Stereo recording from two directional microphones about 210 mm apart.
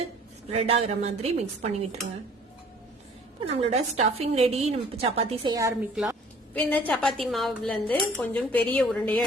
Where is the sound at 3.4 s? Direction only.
30° right (ahead or behind).